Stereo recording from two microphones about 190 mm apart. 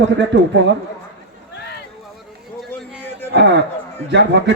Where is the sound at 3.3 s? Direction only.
65° right (ahead or behind).